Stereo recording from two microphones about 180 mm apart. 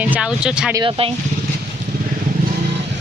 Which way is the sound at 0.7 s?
25° right (ahead or behind).